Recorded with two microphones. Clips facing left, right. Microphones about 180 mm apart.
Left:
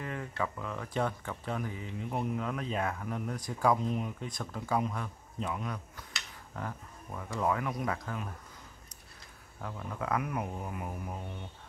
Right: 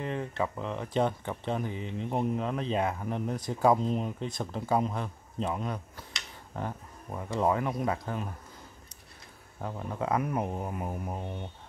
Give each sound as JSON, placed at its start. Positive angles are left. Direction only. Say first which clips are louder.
{"t": 0.0, "sound": "speech", "louder": "right 4 dB", "side_deg": -25}
{"t": 9.6, "sound": "speech", "louder": "right 4 dB", "side_deg": -30}